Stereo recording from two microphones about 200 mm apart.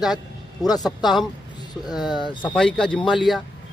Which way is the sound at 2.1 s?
20° left (ahead or behind).